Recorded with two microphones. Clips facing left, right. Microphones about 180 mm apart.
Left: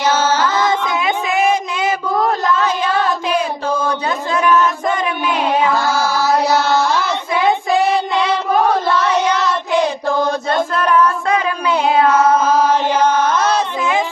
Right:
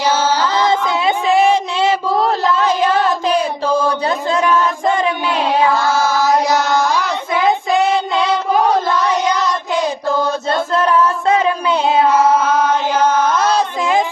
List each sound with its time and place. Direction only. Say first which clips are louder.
0.0 s music: even; 10° right (ahead or behind)
0.7 s a sound: right 2 dB; 30° right (ahead or behind)
4.0 s a sound: right 1 dB; 25° right (ahead or behind)
5.3 s carnatic music: even; centre (ahead or behind)
6.7 s child singing: even; 15° right (ahead or behind)
8.9 s child singing: left 1 dB; 10° right (ahead or behind)
11.3 s a sound: right 2 dB; 25° right (ahead or behind)
12.1 s mantra: even; 10° right (ahead or behind)
12.5 s chant: left 1 dB; 10° left (ahead or behind)
12.9 s chant: even; 10° right (ahead or behind)